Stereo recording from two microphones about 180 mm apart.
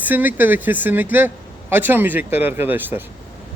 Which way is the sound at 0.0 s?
10° right (ahead or behind).